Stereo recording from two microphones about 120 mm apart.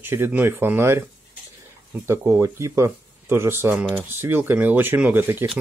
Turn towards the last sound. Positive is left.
turn(degrees=-15)  # may be behind; listen again after turning